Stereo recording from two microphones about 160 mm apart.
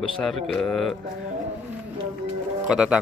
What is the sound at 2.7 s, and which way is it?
Speech, 5° right (ahead or behind).